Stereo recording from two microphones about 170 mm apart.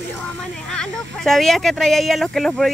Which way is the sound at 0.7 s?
5° left (ahead or behind).